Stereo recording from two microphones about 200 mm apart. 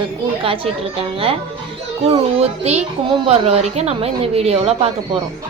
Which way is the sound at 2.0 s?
30° right (ahead or behind).